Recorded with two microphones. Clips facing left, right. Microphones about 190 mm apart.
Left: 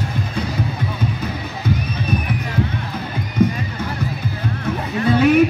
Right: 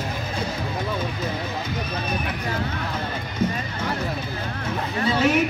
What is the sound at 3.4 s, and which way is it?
Music, 60° left (ahead or behind).